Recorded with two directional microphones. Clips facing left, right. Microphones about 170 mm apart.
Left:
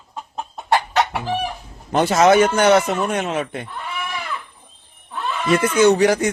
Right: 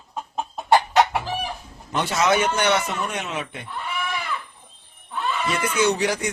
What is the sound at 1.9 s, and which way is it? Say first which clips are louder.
A man's voice: left 7 dB; 45° left (ahead or behind).